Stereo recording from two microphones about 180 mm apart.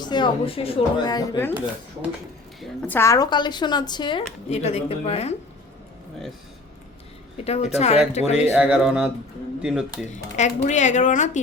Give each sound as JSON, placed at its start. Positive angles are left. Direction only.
{"t": 0.0, "sound": "speech", "side_deg": 25}
{"t": 2.6, "sound": "speech", "side_deg": 10}
{"t": 4.4, "sound": "a woman's voice", "side_deg": 35}
{"t": 7.4, "sound": "a woman's voice", "side_deg": 35}
{"t": 8.5, "sound": "speech", "side_deg": -5}
{"t": 10.3, "sound": "a woman's voice", "side_deg": 40}